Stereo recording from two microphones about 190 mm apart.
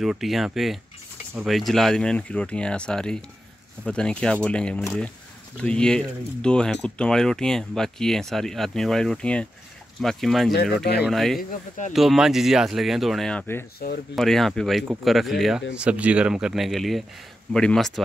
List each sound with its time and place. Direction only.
0.0 s speech: centre (ahead or behind)
10.8 s speech: 60° left (ahead or behind)
11.1 s speech: centre (ahead or behind)
13.7 s speech: 55° left (ahead or behind)
14.1 s speech: centre (ahead or behind)